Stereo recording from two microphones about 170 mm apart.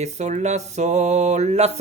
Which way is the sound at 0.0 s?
45° right (ahead or behind).